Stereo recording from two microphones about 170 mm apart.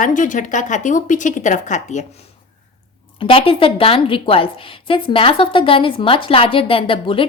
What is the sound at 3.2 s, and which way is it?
A woman's voice, 35° left (ahead or behind).